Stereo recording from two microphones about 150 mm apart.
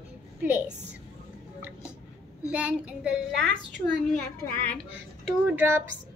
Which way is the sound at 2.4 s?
5° right (ahead or behind).